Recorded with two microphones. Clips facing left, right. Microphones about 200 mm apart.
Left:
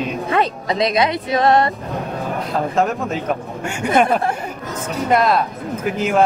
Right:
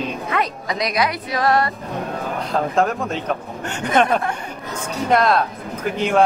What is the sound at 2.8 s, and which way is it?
Speech, 5° left (ahead or behind).